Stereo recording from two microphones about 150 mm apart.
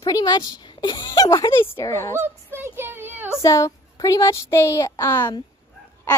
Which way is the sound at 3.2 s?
20° left (ahead or behind).